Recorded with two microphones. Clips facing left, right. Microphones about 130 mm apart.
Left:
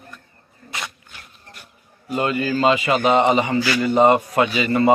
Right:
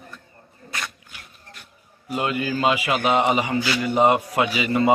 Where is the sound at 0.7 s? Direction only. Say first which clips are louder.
Left 1 dB; 25° left (ahead or behind).